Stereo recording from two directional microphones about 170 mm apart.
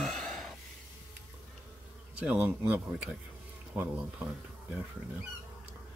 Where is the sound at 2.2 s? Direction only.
5° right (ahead or behind).